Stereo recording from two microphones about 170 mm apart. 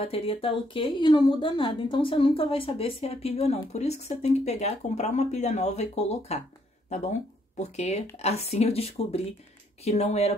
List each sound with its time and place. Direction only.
0.0 s a woman's voice: 35° left (ahead or behind)